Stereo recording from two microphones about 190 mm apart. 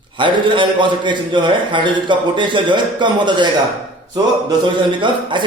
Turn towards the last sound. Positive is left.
turn(degrees=-25)  # may be behind; listen again after turning